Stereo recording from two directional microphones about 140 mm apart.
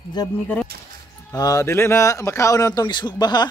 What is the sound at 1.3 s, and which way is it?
Speech, 25° left (ahead or behind).